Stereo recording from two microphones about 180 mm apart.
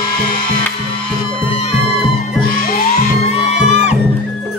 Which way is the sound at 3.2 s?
40° left (ahead or behind).